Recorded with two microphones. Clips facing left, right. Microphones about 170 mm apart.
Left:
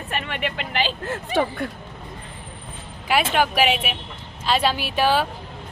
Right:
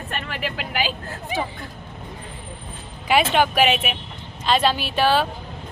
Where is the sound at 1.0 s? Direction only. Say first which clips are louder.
Left 5 dB; 80° left.